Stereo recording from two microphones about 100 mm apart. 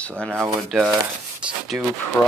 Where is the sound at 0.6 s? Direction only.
Centre (ahead or behind).